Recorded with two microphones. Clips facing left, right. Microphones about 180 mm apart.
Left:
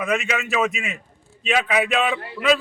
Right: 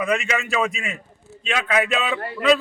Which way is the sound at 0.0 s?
Centre (ahead or behind).